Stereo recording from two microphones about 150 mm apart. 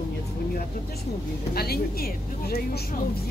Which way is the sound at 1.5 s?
90° left.